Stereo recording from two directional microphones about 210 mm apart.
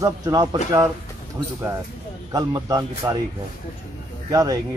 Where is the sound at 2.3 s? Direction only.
15° right (ahead or behind).